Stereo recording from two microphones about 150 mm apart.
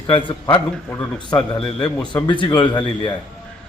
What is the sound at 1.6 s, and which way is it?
A man's voice, 30° left (ahead or behind).